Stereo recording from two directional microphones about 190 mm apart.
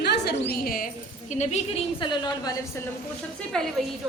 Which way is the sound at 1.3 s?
35° left (ahead or behind).